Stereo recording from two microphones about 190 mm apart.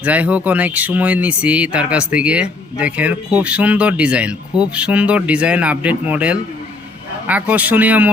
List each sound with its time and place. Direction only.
0.0 s speech: 10° right (ahead or behind)